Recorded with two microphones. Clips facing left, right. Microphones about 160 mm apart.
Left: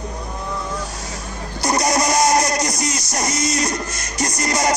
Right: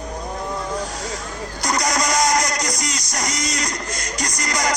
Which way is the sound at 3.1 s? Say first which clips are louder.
Left 3 dB; 20° left (ahead or behind).